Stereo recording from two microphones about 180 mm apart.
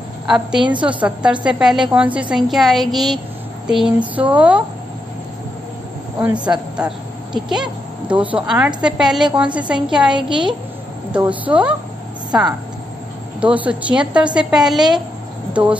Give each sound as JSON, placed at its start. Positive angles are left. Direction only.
{"t": 0.3, "sound": "a woman's voice", "side_deg": -5}
{"t": 6.1, "sound": "a woman's voice", "side_deg": -10}
{"t": 10.1, "sound": "a woman's voice", "side_deg": -25}
{"t": 11.1, "sound": "a woman's voice", "side_deg": -5}